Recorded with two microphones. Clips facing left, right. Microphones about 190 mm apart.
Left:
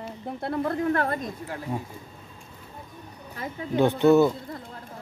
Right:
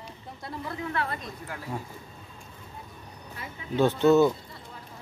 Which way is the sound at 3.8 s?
15° left (ahead or behind).